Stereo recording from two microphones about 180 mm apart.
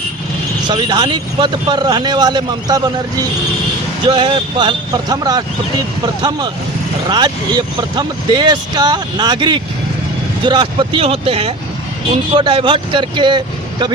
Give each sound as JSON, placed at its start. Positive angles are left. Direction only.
{"t": 0.7, "sound": "speech", "side_deg": -25}
{"t": 7.1, "sound": "speech", "side_deg": -25}